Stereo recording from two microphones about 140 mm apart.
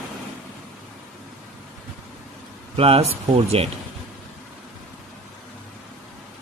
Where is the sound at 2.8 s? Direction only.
45° right (ahead or behind).